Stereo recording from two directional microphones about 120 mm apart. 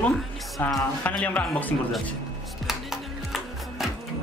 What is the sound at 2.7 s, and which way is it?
Music, 5° right (ahead or behind).